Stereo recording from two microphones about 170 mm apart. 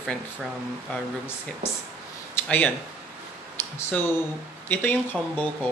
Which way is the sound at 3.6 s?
15° left (ahead or behind).